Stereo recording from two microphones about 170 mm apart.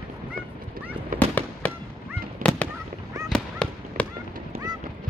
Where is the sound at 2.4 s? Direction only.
10° left (ahead or behind).